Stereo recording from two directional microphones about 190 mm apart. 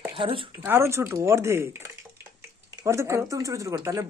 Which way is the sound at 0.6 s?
15° right (ahead or behind).